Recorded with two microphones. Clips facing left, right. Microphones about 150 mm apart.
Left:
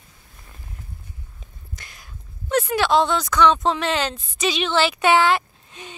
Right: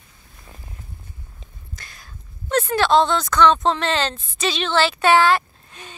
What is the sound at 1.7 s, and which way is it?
Speech, 15° left (ahead or behind).